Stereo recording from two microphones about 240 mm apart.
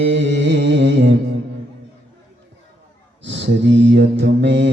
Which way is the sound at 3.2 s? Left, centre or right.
Right.